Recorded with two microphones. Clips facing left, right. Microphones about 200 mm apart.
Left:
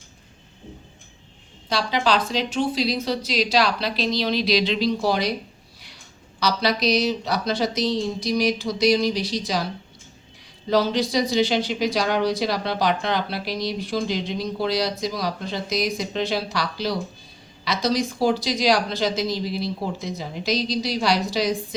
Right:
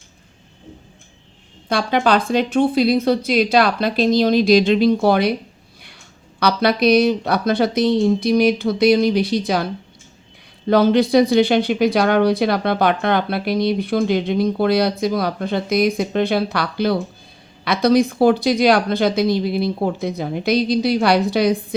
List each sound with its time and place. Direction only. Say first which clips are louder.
1.7 s speech: right 5 dB; 55° right (ahead or behind)
6.4 s speech: right 6 dB; 60° right (ahead or behind)
10.7 s speech: right 7 dB; 55° right (ahead or behind)